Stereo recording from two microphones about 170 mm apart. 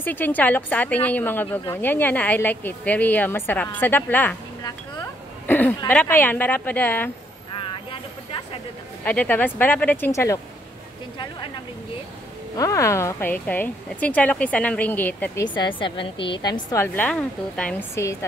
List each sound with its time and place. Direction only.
0.0 s a woman's voice: 10° left (ahead or behind)
5.5 s a woman's voice: 10° left (ahead or behind)
9.0 s a woman's voice: 10° left (ahead or behind)
12.5 s a woman's voice: 20° left (ahead or behind)
15.5 s a woman's voice: 30° left (ahead or behind)
16.7 s a woman's voice: 10° left (ahead or behind)